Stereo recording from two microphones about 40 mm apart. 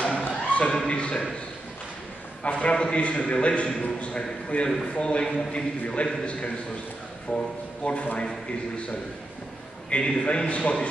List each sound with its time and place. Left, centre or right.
0.2 s a sound: left
0.7 s a man's voice: left
2.4 s a man's voice: left
5.2 s a man's voice: centre
7.2 s a man's voice: left
9.8 s a man's voice: left